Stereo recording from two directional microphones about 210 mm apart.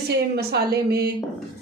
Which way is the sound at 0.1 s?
50° right (ahead or behind).